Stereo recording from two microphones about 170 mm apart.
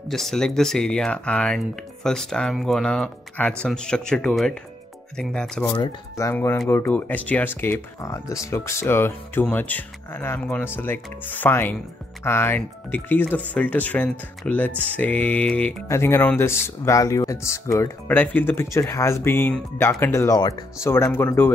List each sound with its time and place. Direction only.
0.1 s speech: centre (ahead or behind)
5.8 s speech: 20° left (ahead or behind)